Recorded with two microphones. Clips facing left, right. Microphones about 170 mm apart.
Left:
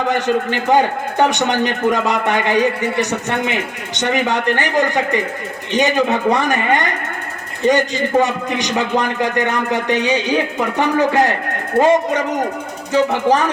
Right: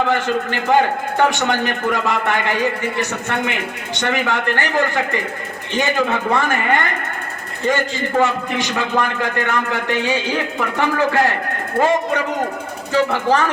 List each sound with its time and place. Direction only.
0.1 s a man's voice: 15° left (ahead or behind)
12.9 s a man's voice: 20° left (ahead or behind)